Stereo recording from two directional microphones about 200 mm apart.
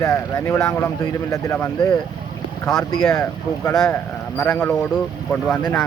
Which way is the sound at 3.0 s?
15° left (ahead or behind).